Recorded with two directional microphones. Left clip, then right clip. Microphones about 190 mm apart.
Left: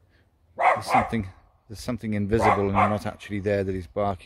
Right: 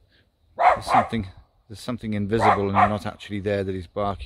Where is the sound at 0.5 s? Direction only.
35° right (ahead or behind).